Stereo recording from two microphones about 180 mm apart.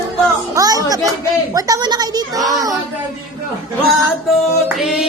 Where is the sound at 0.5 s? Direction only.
20° right (ahead or behind).